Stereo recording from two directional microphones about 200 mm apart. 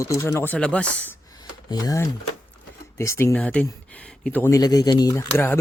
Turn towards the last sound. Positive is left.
turn(degrees=10)  # may be behind; listen again after turning